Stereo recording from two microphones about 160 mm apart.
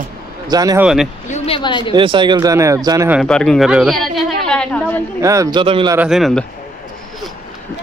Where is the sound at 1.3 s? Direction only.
40° left (ahead or behind).